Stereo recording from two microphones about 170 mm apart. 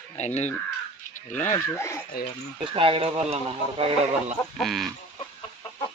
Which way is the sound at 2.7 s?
30° right (ahead or behind).